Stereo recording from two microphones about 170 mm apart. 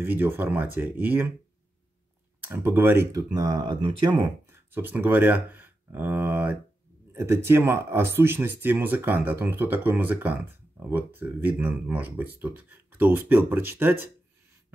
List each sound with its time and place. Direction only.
0.0 s speech: 10° right (ahead or behind)
2.4 s speech: 10° right (ahead or behind)
4.5 s speech: 10° right (ahead or behind)